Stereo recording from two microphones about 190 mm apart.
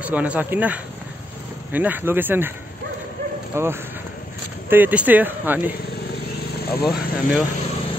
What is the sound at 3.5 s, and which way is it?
Speech, 15° right (ahead or behind).